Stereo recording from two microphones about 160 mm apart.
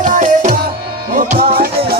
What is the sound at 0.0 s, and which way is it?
Tabla, 55° right (ahead or behind).